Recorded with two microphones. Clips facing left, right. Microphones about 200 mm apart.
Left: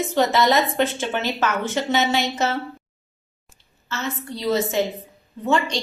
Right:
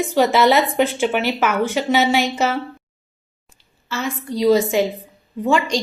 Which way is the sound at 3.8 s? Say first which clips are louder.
Right 4 dB; 15° right (ahead or behind).